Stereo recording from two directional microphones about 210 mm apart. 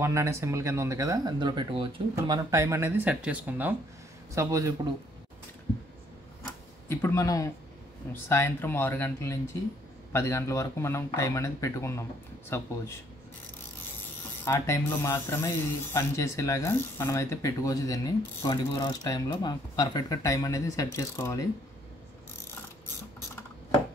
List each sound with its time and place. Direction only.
0.0 s speech: 15° right (ahead or behind)
6.4 s tick-tock: 10° left (ahead or behind)
8.1 s speech: 10° left (ahead or behind)
14.4 s speech: 10° left (ahead or behind)